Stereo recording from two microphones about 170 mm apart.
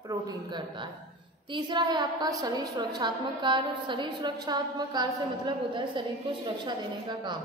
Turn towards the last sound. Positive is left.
turn(degrees=-25)  # may be behind; listen again after turning